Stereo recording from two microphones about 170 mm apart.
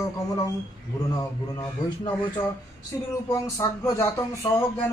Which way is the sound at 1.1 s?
25° left (ahead or behind).